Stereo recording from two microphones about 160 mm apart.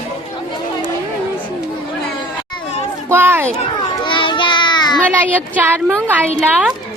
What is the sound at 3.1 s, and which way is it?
Speech, 15° right (ahead or behind).